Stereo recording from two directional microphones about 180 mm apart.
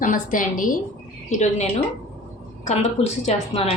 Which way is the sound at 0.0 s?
50° left (ahead or behind).